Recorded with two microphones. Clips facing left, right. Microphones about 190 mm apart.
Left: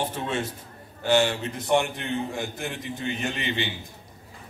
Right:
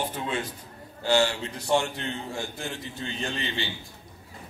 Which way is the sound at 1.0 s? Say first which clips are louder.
Left 2 dB; 20° left (ahead or behind).